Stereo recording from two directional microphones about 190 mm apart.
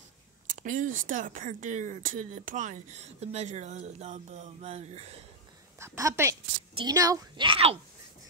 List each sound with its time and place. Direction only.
0.5 s speech: 45° right (ahead or behind)
5.8 s a woman's voice: 15° right (ahead or behind)